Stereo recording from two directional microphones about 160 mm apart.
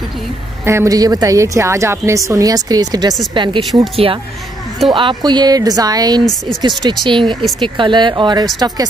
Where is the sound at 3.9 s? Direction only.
35° right (ahead or behind).